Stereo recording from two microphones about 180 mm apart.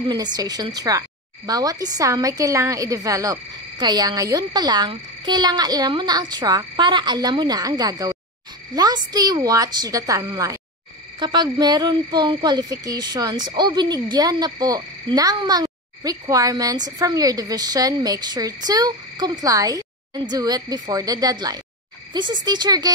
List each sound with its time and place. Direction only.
0.1 s speech: 20° right (ahead or behind)